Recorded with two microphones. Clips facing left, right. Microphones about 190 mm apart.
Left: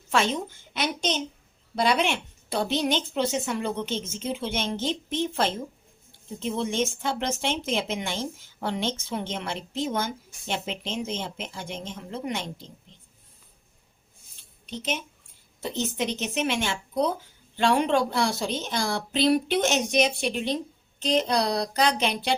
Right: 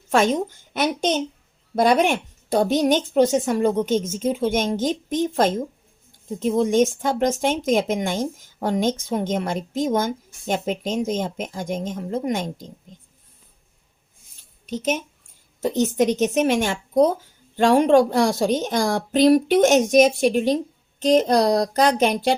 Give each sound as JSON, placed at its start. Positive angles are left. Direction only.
{"t": 0.1, "sound": "a woman's voice", "side_deg": -45}
{"t": 14.7, "sound": "a woman's voice", "side_deg": -45}